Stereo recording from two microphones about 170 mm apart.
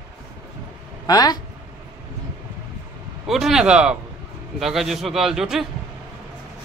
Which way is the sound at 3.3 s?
Centre (ahead or behind).